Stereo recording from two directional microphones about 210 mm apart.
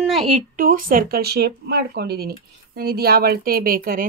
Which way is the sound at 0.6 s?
40° right (ahead or behind).